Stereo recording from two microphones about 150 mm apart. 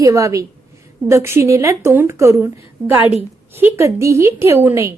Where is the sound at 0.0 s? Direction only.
20° right (ahead or behind).